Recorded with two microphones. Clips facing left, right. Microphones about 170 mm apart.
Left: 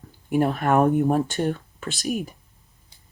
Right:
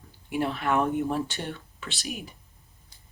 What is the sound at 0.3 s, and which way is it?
Speech, 45° left (ahead or behind).